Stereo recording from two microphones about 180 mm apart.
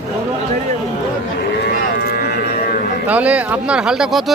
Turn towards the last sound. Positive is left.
turn(degrees=-5)  # may be behind; listen again after turning